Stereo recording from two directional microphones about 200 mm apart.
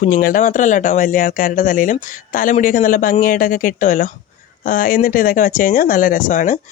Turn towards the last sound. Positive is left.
turn(degrees=40)  # may be behind; listen again after turning